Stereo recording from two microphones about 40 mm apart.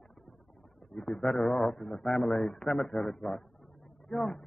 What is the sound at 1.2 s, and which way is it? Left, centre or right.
Speech, centre.